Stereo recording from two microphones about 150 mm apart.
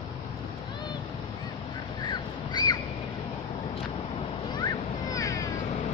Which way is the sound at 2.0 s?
30° left (ahead or behind).